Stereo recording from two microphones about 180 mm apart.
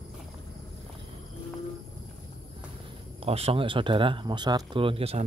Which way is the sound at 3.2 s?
35° right (ahead or behind).